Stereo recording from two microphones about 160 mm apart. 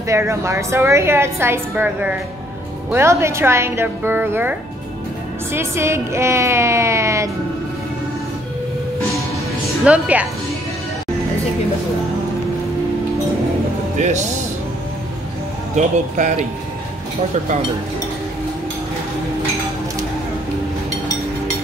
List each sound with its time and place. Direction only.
0.0 s a woman's voice: 15° right (ahead or behind)
9.8 s a woman's voice: 10° right (ahead or behind)
13.9 s speech: 50° right (ahead or behind)
15.7 s speech: 45° right (ahead or behind)